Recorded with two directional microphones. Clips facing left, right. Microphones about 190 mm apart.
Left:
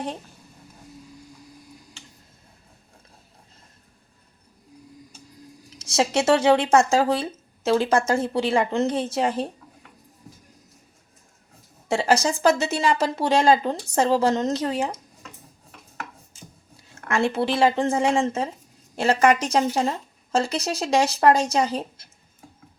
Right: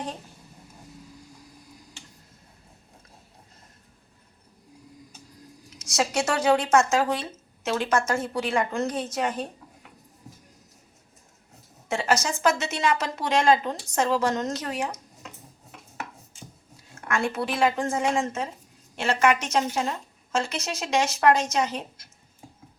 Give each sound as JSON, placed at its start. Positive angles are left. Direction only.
{"t": 5.8, "sound": "speech", "side_deg": 30}
{"t": 11.9, "sound": "speech", "side_deg": 35}
{"t": 17.1, "sound": "speech", "side_deg": 30}